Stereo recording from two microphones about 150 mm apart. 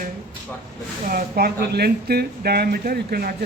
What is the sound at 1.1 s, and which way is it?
Speech, 90° right.